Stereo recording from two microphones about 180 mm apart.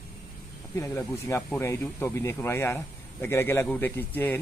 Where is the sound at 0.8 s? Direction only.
15° left (ahead or behind).